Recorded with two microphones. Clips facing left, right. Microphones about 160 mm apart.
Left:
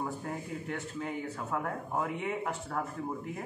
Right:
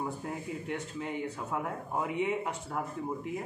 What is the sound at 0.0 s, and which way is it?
A man's voice, 5° right (ahead or behind).